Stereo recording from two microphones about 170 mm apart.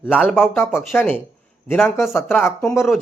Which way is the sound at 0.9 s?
15° left (ahead or behind).